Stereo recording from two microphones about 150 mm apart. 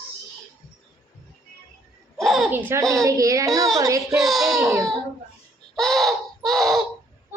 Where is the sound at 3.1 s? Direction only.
20° right (ahead or behind).